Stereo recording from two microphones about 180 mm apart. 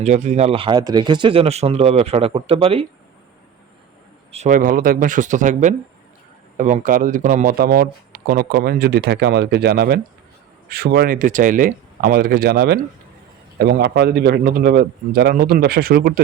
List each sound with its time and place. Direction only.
0.0 s speech: 40° right (ahead or behind)
4.3 s speech: 40° right (ahead or behind); by 16.2 s 55° right (ahead or behind)